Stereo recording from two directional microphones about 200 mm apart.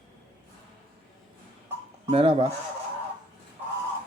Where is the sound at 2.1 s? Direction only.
30° right (ahead or behind).